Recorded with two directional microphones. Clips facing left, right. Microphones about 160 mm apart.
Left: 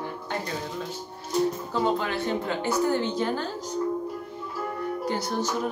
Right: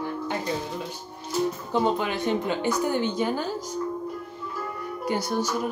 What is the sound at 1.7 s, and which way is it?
Speech, 15° right (ahead or behind).